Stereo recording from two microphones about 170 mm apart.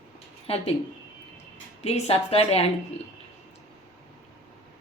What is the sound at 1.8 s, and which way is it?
Speech, 35° left (ahead or behind).